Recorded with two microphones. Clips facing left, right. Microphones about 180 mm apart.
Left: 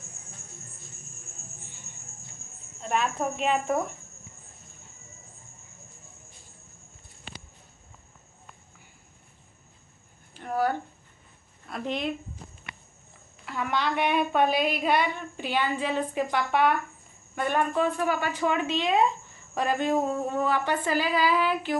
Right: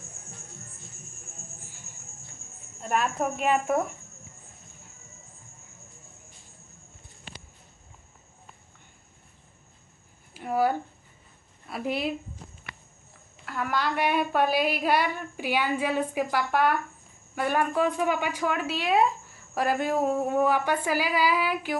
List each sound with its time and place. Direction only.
2.8 s a woman's voice: 5° right (ahead or behind)
10.3 s a sound: 10° right (ahead or behind)
11.6 s a woman's voice: 5° right (ahead or behind)
13.5 s a woman's voice: centre (ahead or behind)